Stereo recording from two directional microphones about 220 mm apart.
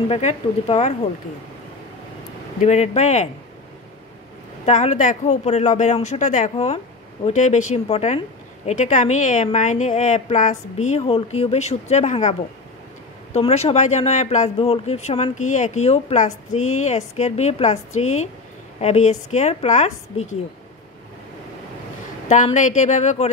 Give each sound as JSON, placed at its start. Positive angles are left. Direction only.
{"t": 0.1, "sound": "speech", "side_deg": 30}
{"t": 2.6, "sound": "a woman's voice", "side_deg": 30}
{"t": 4.6, "sound": "a woman's voice", "side_deg": 30}
{"t": 22.3, "sound": "a woman's voice", "side_deg": 35}